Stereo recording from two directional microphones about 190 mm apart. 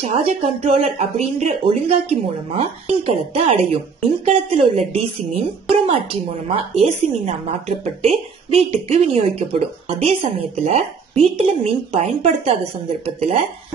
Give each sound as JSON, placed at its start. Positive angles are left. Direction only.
{"t": 0.0, "sound": "speech", "side_deg": -30}